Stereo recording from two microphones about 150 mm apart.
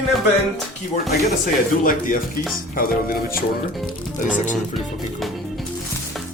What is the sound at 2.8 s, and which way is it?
Music, 75° left (ahead or behind).